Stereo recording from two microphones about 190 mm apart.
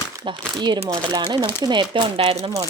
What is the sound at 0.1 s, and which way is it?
Speech, 20° right (ahead or behind).